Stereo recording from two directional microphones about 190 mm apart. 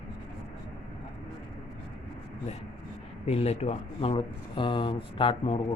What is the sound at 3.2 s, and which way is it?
Speech, 35° left (ahead or behind).